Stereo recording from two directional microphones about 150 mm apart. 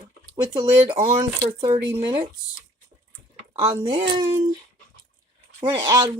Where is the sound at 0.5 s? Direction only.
25° right (ahead or behind).